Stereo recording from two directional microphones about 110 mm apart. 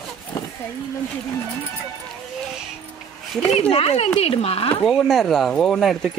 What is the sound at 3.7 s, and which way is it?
Speech, 65° left (ahead or behind).